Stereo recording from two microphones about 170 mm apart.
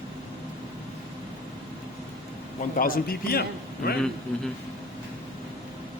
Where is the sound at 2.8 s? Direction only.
60° left (ahead or behind).